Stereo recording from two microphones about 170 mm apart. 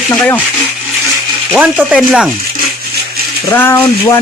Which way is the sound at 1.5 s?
10° right (ahead or behind).